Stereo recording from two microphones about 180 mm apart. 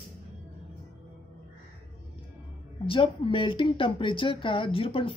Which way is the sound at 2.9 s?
30° left (ahead or behind).